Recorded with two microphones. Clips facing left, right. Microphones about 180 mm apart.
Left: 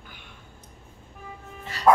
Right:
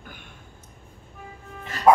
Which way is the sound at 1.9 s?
20° right (ahead or behind).